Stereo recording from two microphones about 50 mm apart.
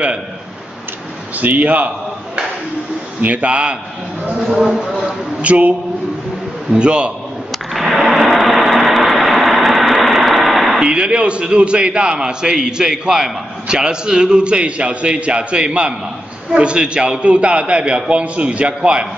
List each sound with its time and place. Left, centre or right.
1.3 s a man's voice: right
3.2 s a man's voice: right
4.4 s speech: centre
5.4 s a man's voice: right
6.8 s a man's voice: centre
7.7 s a sound: centre
10.8 s a man's voice: centre